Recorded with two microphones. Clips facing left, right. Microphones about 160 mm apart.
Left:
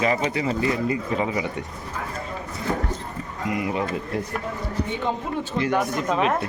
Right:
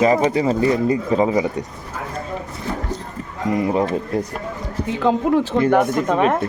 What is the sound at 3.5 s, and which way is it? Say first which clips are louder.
Speech: right 7 dB; 35° right (ahead or behind).